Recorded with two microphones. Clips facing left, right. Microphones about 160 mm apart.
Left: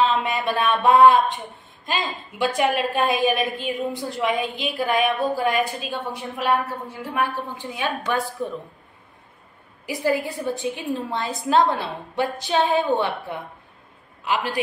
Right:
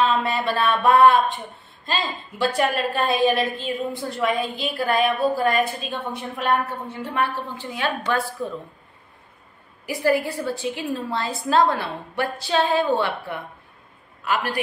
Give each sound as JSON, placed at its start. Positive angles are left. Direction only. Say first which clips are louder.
{"t": 0.0, "sound": "a woman's voice", "louder": "even", "side_deg": 20}
{"t": 9.8, "sound": "a woman's voice", "louder": "right 2 dB", "side_deg": 20}